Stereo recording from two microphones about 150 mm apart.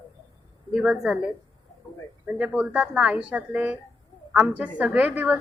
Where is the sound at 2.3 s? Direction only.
5° right (ahead or behind).